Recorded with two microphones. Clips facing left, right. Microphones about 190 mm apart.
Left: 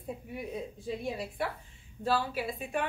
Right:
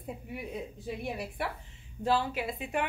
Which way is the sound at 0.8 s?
15° right (ahead or behind).